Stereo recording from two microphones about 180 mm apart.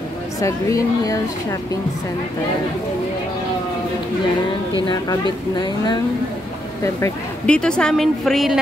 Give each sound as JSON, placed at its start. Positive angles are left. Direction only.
{"t": 0.4, "sound": "a woman's voice", "side_deg": 20}
{"t": 6.8, "sound": "a woman's voice", "side_deg": 10}